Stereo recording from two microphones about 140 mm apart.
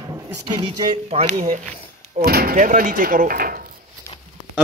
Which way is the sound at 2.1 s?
90° right.